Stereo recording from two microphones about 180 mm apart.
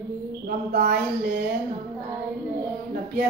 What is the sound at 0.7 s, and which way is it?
Speech, 55° right (ahead or behind).